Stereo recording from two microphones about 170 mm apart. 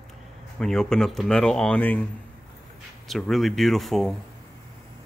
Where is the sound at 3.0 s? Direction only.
Centre (ahead or behind).